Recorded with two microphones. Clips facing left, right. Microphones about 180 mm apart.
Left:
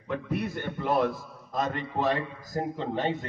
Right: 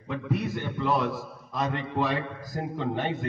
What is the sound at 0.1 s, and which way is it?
A man's voice, 55° left (ahead or behind).